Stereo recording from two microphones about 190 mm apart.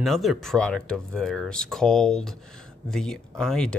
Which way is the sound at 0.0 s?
Centre (ahead or behind).